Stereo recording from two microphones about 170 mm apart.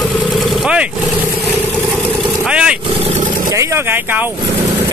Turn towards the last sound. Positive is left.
turn(degrees=-15)  # may be behind; listen again after turning